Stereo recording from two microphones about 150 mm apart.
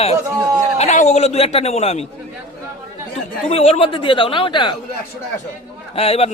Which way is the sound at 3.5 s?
40° left (ahead or behind).